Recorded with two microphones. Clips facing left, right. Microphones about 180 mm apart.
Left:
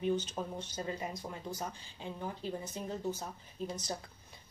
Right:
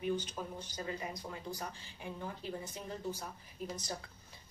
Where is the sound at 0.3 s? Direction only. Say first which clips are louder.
Left 3 dB; 25° left (ahead or behind).